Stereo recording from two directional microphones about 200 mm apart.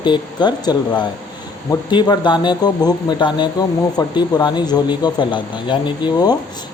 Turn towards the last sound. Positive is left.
turn(degrees=20)  # may be behind; listen again after turning